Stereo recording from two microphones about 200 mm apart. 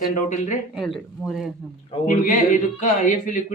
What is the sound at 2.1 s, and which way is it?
Speech, 40° left (ahead or behind).